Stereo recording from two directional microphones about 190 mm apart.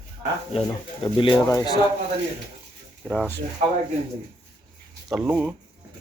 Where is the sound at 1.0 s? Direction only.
25° left (ahead or behind).